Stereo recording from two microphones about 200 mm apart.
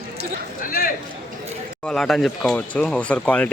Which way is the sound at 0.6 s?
45° left (ahead or behind).